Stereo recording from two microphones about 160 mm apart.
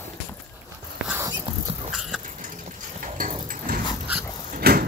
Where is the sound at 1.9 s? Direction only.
Centre (ahead or behind).